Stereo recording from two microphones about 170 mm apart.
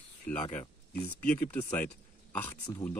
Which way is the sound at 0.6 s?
10° left (ahead or behind).